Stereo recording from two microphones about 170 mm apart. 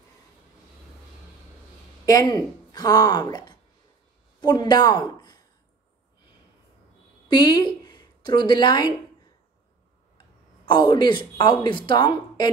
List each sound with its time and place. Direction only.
2.0 s a woman's voice: 20° left (ahead or behind)
7.2 s a woman's voice: 25° left (ahead or behind)
10.1 s speech: 25° left (ahead or behind)